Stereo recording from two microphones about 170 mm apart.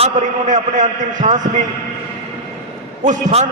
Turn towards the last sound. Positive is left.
turn(degrees=-45)  # may be behind; listen again after turning